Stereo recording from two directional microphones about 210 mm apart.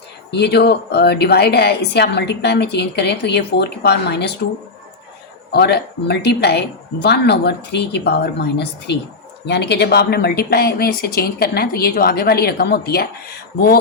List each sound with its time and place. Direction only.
0.3 s a woman's voice: 50° left (ahead or behind)
5.5 s a woman's voice: 50° left (ahead or behind)